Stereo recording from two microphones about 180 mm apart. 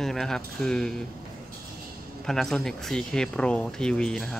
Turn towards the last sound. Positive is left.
turn(degrees=5)  # may be behind; listen again after turning